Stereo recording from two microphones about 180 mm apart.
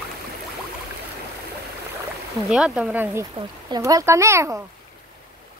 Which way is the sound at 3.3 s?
20° right (ahead or behind).